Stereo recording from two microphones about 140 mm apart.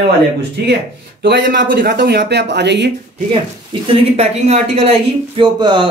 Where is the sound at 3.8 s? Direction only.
50° right (ahead or behind).